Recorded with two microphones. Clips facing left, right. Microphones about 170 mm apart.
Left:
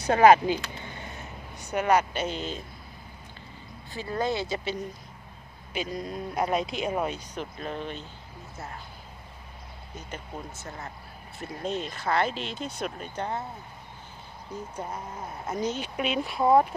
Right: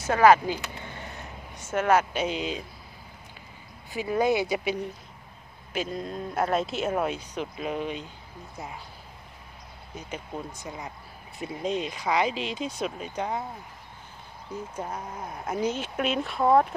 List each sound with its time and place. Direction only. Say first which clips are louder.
0.0 s speech: left 1 dB; 25° left (ahead or behind)
1.5 s speech: right 1 dB; centre (ahead or behind)
3.9 s speech: right 5 dB; 15° right (ahead or behind)
5.7 s speech: right 1 dB; centre (ahead or behind)
9.9 s speech: right 3 dB; 10° right (ahead or behind)
14.5 s speech: right 1 dB; 10° right (ahead or behind)